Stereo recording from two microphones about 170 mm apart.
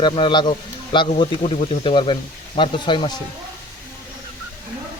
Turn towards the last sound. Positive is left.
turn(degrees=30)  # may be behind; listen again after turning